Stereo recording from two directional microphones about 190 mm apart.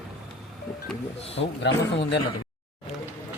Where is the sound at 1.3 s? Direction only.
70° left (ahead or behind).